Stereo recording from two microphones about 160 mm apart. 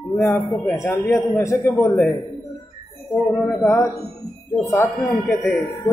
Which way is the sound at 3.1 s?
Centre (ahead or behind).